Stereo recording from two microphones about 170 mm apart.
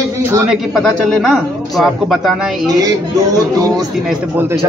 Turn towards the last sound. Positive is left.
turn(degrees=-10)  # may be behind; listen again after turning